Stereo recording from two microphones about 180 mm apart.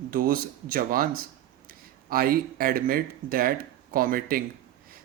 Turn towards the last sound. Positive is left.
turn(degrees=-50)  # may be behind; listen again after turning